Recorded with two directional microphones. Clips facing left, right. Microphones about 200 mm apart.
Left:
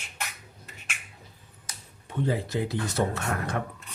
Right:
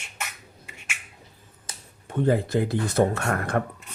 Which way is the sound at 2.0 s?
50° right (ahead or behind).